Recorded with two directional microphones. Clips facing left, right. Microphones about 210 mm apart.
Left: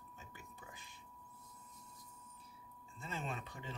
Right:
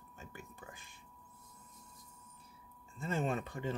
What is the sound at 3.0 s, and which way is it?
Speech, 50° right (ahead or behind).